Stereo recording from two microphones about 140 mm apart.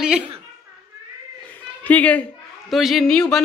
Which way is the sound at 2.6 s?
Centre (ahead or behind).